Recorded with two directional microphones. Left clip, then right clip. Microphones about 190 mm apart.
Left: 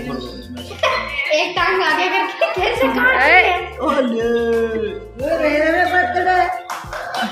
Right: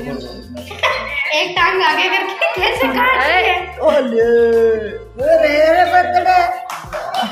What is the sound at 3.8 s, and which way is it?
Speech, 35° right (ahead or behind).